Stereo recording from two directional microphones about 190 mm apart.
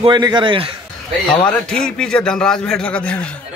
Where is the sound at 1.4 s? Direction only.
5° left (ahead or behind).